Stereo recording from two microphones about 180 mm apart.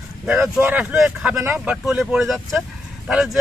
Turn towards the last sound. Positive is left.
turn(degrees=0)  # may be behind; listen again after turning